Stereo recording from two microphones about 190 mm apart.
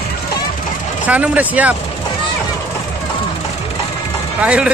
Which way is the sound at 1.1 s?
10° right (ahead or behind).